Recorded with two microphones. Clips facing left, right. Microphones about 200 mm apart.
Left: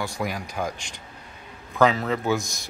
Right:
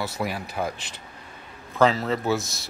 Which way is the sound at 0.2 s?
5° right (ahead or behind).